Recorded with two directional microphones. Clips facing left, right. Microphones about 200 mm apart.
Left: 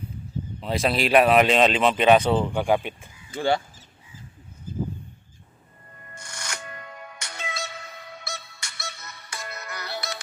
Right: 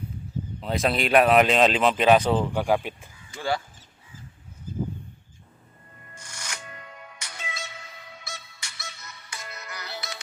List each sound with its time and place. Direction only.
0.6 s speech: centre (ahead or behind)
3.3 s speech: 25° left (ahead or behind)
6.2 s music: 65° left (ahead or behind)